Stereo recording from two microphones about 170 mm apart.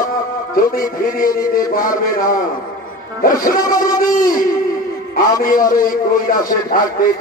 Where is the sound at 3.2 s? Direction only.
55° left (ahead or behind).